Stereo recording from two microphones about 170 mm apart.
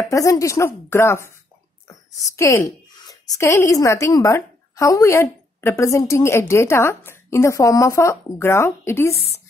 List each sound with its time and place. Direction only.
0.1 s a woman's voice: 20° left (ahead or behind)
2.3 s a woman's voice: 15° left (ahead or behind)